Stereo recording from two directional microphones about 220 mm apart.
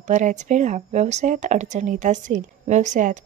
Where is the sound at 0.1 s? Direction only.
35° right (ahead or behind).